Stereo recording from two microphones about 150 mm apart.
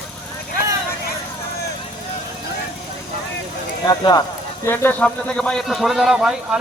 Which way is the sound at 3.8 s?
25° left (ahead or behind).